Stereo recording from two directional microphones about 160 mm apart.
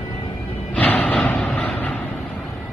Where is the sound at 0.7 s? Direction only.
10° left (ahead or behind).